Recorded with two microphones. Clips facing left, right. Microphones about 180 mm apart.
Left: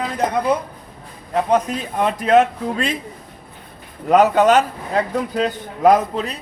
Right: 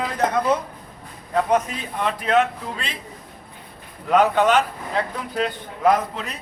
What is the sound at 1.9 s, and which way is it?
A man's voice, 45° left (ahead or behind).